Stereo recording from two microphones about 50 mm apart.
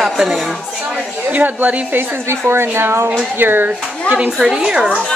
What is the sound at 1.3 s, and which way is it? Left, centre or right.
Speech, right.